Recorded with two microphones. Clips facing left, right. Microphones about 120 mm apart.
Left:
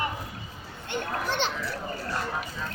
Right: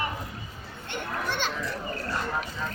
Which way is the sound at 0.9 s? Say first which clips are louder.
Left 2 dB; 20° left (ahead or behind).